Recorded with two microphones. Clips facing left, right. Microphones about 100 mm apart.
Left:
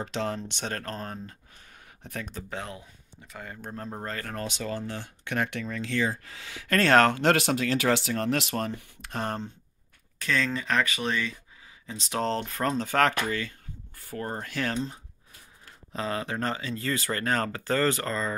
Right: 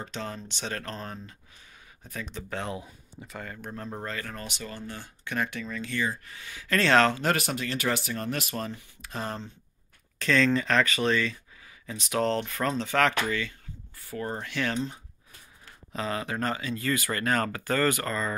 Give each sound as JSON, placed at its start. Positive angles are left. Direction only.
{"t": 0.0, "sound": "speech", "side_deg": 85}
{"t": 0.5, "sound": "speech", "side_deg": 50}
{"t": 2.0, "sound": "speech", "side_deg": 65}
{"t": 2.6, "sound": "speech", "side_deg": -5}
{"t": 3.6, "sound": "speech", "side_deg": 35}
{"t": 4.4, "sound": "speech", "side_deg": 85}
{"t": 6.7, "sound": "speech", "side_deg": 50}
{"t": 7.2, "sound": "speech", "side_deg": 85}
{"t": 10.1, "sound": "speech", "side_deg": 10}
{"t": 11.8, "sound": "speech", "side_deg": 30}